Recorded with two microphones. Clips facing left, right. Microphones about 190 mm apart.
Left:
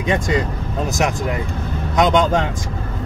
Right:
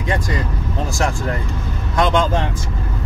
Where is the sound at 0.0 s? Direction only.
20° left (ahead or behind).